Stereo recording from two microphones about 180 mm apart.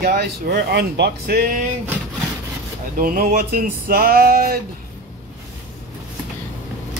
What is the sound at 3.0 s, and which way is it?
Speech, 50° right (ahead or behind).